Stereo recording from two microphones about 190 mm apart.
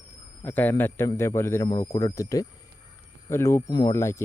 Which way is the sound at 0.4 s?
10° left (ahead or behind).